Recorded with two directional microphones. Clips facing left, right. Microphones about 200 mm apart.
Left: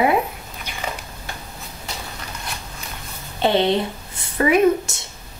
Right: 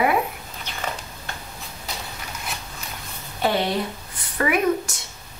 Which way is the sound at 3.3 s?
25° left (ahead or behind).